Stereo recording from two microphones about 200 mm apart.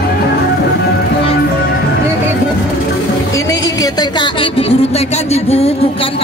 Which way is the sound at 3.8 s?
20° left (ahead or behind).